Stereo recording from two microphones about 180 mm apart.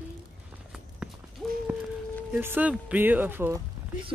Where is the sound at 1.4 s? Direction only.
Centre (ahead or behind).